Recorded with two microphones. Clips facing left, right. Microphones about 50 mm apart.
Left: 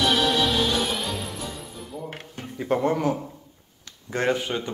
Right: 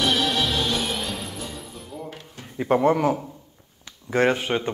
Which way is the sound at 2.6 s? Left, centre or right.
Centre.